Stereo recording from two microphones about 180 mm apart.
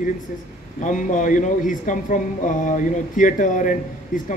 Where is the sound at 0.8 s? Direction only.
45° left (ahead or behind).